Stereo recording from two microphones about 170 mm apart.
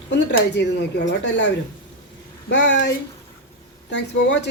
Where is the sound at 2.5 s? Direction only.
90° left.